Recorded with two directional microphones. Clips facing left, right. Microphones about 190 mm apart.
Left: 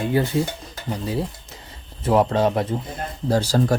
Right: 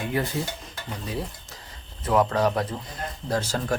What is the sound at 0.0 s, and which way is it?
Speech, 30° left (ahead or behind).